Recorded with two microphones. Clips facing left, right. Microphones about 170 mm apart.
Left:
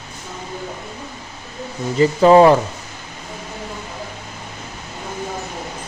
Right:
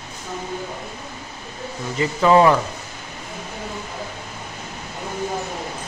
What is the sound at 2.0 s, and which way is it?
Speech, 35° left (ahead or behind).